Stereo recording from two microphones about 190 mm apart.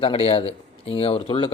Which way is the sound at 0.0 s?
30° left (ahead or behind).